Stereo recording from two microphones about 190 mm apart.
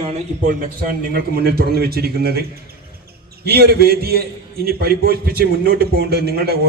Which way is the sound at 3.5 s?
55° right (ahead or behind).